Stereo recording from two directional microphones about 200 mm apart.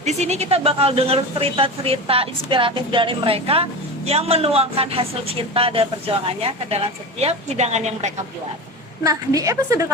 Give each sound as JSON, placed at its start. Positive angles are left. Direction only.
{"t": 0.0, "sound": "speech", "side_deg": -35}
{"t": 9.0, "sound": "a woman's voice", "side_deg": -15}